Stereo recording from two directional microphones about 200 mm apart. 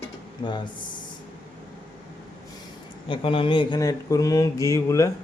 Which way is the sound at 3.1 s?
25° left (ahead or behind).